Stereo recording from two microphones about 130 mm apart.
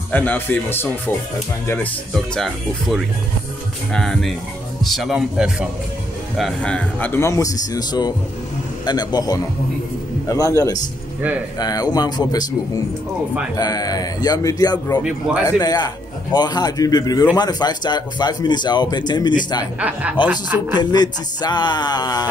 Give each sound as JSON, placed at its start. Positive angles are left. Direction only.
{"t": 0.1, "sound": "speech", "side_deg": 15}
{"t": 2.1, "sound": "speech", "side_deg": 0}
{"t": 13.6, "sound": "speech", "side_deg": 30}
{"t": 19.8, "sound": "a woman's voice", "side_deg": -10}
{"t": 20.7, "sound": "speech", "side_deg": 35}